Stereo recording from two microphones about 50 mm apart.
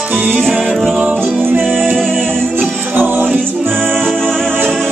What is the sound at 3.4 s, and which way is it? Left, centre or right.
Music, centre.